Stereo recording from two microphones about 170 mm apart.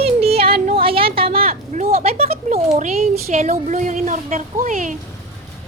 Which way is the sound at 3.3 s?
45° right (ahead or behind).